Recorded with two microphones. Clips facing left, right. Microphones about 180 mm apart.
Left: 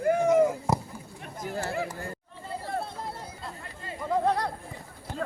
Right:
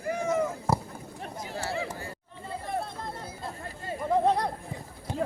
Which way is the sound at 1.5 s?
50° left (ahead or behind).